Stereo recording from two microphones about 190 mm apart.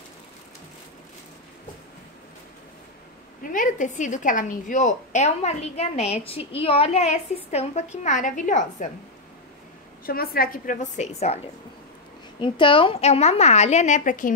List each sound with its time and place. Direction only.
3.5 s a woman's voice: 40° left (ahead or behind)
10.0 s a woman's voice: 50° left (ahead or behind)